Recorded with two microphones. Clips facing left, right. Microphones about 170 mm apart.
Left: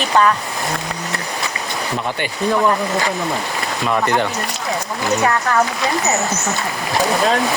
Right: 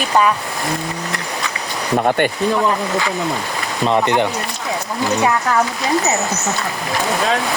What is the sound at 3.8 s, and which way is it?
Speech, 20° right (ahead or behind).